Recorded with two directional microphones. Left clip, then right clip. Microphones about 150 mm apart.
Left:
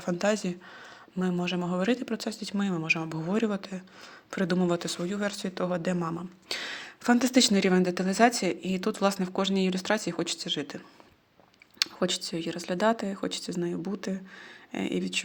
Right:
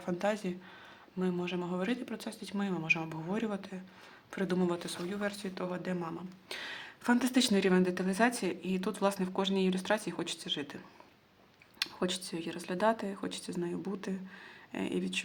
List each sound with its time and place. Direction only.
0.0 s speech: 35° left (ahead or behind)
11.8 s speech: 35° left (ahead or behind)